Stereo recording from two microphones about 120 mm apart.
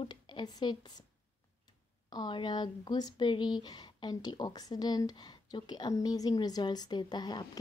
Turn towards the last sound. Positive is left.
turn(degrees=35)  # may be behind; listen again after turning